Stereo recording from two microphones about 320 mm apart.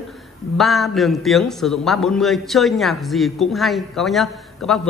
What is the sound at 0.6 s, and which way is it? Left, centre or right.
A man's voice, centre.